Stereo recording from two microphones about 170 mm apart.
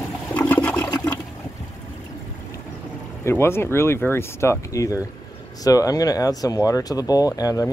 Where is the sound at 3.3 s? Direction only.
15° left (ahead or behind).